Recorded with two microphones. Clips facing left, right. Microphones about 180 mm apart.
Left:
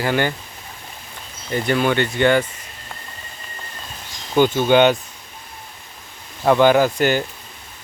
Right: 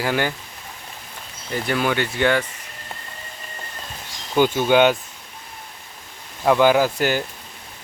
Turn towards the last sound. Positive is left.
turn(degrees=-5)  # may be behind; listen again after turning